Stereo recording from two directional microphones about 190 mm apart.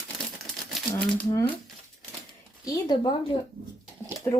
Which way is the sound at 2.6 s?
20° left (ahead or behind).